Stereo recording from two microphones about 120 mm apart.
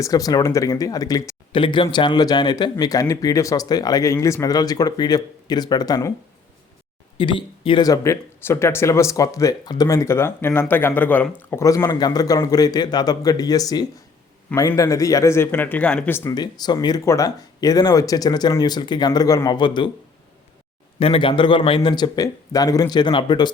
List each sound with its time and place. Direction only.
0.0 s speech: 30° left (ahead or behind)
1.5 s speech: 45° left (ahead or behind); by 6.1 s 30° left (ahead or behind)
7.2 s speech: 45° left (ahead or behind)
7.9 s speech: 25° left (ahead or behind)
11.6 s speech: 30° left (ahead or behind); by 16.1 s 10° left (ahead or behind)
16.3 s speech: 35° left (ahead or behind)
21.0 s speech: 50° left (ahead or behind)